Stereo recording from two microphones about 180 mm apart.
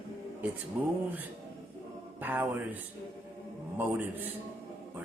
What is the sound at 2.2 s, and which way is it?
Speech, 10° right (ahead or behind).